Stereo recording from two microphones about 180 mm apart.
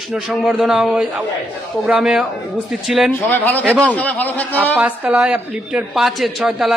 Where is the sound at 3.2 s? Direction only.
10° left (ahead or behind).